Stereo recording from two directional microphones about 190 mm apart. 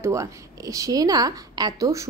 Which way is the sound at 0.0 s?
15° right (ahead or behind).